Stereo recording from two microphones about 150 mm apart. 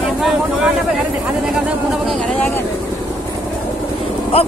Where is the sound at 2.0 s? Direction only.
5° left (ahead or behind).